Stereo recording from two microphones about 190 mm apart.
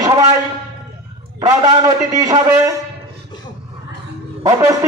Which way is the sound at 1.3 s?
20° right (ahead or behind).